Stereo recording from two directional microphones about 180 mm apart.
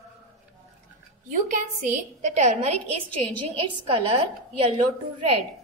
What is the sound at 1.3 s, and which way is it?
A woman's voice, 40° right (ahead or behind).